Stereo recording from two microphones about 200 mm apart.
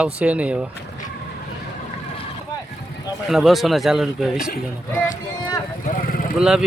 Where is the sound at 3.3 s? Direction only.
Centre (ahead or behind).